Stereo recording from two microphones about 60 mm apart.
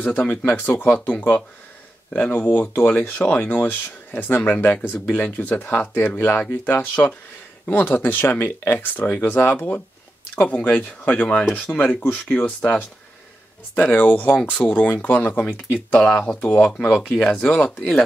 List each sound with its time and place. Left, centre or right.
0.0 s speech: left
13.7 s speech: left; by 17.7 s centre